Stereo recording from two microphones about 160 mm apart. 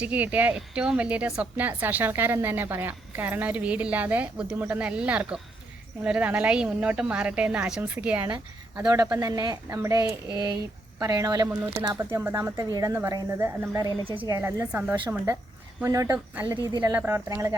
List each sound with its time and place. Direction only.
0.0 s speech: 10° right (ahead or behind)
8.9 s speech: 20° right (ahead or behind)
14.0 s speech: 35° right (ahead or behind)
14.3 s speech: 20° right (ahead or behind)
16.7 s speech: 25° right (ahead or behind)